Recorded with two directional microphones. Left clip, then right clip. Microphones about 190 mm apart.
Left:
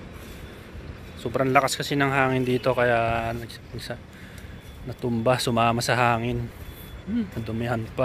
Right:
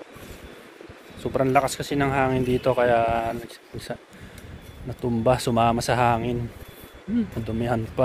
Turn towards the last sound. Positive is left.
turn(degrees=-15)  # may be behind; listen again after turning